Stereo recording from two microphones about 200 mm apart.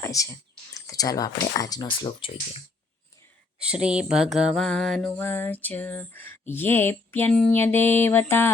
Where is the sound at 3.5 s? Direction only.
5° right (ahead or behind); by 8.5 s 10° left (ahead or behind).